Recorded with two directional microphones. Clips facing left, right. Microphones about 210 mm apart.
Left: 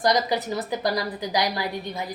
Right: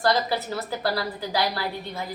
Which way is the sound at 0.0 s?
15° left (ahead or behind).